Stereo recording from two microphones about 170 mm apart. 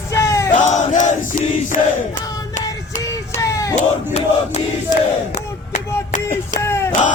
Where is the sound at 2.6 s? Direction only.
20° left (ahead or behind).